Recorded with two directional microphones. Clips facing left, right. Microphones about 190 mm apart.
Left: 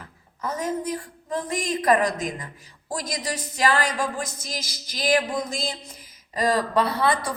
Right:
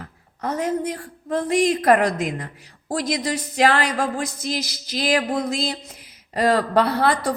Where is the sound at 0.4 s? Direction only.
65° right (ahead or behind).